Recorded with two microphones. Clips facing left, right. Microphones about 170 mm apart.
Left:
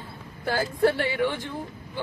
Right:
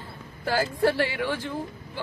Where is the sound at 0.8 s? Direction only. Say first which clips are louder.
Left 3 dB; 20° left (ahead or behind).